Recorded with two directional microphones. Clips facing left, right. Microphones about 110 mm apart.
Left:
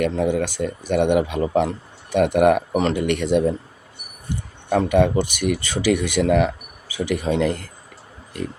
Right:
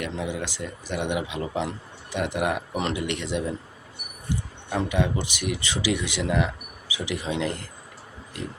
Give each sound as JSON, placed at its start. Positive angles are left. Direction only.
{"t": 0.2, "sound": "speech", "side_deg": 50}
{"t": 2.7, "sound": "speech", "side_deg": 45}